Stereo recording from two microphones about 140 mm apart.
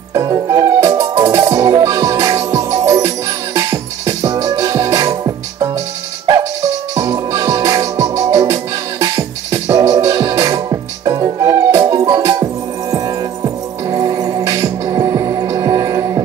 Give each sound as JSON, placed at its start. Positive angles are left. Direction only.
{"t": 0.1, "sound": "music", "side_deg": -25}
{"t": 7.0, "sound": "music", "side_deg": -30}